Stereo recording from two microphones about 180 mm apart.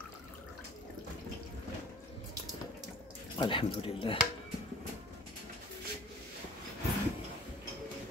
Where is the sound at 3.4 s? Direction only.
30° left (ahead or behind).